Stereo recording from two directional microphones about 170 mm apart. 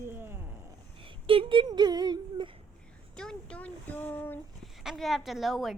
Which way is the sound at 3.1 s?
5° left (ahead or behind).